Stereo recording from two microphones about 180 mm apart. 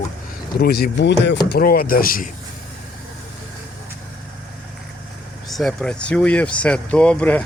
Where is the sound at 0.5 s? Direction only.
60° left (ahead or behind); by 1.4 s 75° left (ahead or behind).